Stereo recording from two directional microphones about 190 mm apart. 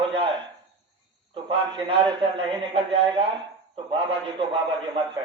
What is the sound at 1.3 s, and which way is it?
A man's voice, 30° right (ahead or behind).